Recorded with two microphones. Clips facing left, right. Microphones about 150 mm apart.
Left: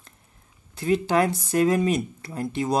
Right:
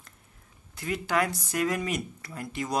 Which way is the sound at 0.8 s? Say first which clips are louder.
Left 7 dB; 30° left (ahead or behind).